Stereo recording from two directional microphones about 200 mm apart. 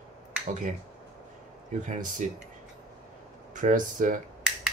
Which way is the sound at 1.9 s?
40° right (ahead or behind).